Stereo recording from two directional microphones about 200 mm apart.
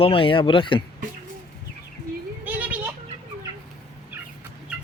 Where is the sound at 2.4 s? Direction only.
10° right (ahead or behind).